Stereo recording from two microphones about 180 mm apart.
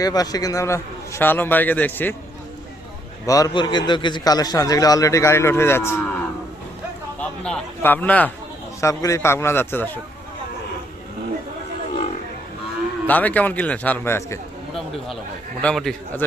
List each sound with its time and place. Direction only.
0.0 s a man's voice: 20° left (ahead or behind)
3.2 s a man's voice: 20° left (ahead or behind)
7.2 s a man's voice: 5° left (ahead or behind)
13.1 s a man's voice: 10° left (ahead or behind)
15.6 s a man's voice: centre (ahead or behind)